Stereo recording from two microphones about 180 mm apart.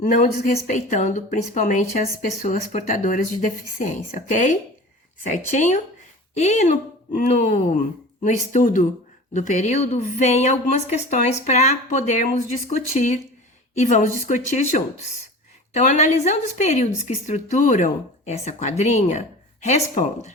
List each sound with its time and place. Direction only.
0.0 s a woman's voice: 45° left (ahead or behind)